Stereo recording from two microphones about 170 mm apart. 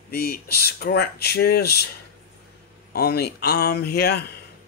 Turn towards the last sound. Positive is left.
turn(degrees=70)  # may be behind; listen again after turning